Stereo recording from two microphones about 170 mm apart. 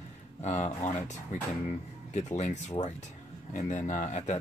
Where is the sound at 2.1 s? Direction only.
40° left (ahead or behind).